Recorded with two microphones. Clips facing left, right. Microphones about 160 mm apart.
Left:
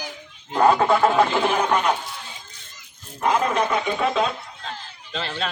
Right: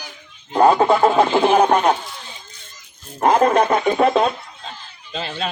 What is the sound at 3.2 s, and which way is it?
Speech, 45° right (ahead or behind).